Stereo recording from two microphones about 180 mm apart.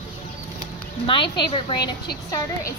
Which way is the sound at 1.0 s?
30° left (ahead or behind).